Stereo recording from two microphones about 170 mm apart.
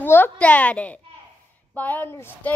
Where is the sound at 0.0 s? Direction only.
10° left (ahead or behind).